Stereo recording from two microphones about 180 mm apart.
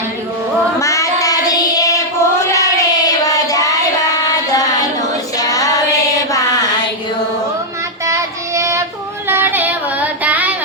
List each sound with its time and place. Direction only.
0.8 s child singing: 15° left (ahead or behind)
5.4 s female singing: 20° left (ahead or behind)
6.3 s a sound: 20° left (ahead or behind)
8.0 s child singing: 15° right (ahead or behind)